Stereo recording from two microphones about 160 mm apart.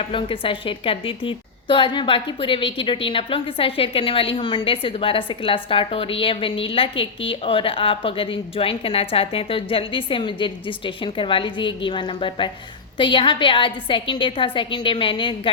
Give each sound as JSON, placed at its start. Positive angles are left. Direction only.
{"t": 0.1, "sound": "a woman's voice", "side_deg": 30}